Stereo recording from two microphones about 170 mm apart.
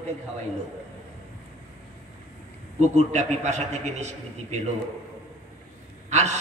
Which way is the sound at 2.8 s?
40° right (ahead or behind).